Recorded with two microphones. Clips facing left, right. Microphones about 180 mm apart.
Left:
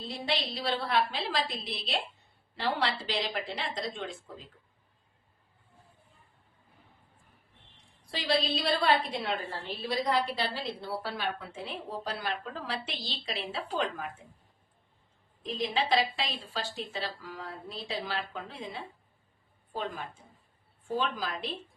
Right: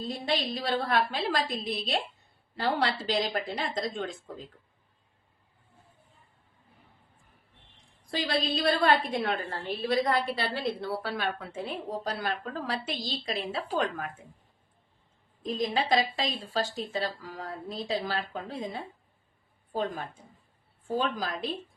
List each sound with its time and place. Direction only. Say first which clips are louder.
0.0 s a woman's voice: right 3 dB; 45° right (ahead or behind)
8.1 s a woman's voice: right 1 dB; 50° right (ahead or behind)
15.4 s a woman's voice: right 2 dB; 45° right (ahead or behind)